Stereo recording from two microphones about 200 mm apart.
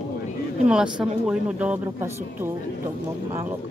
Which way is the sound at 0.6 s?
5° right (ahead or behind).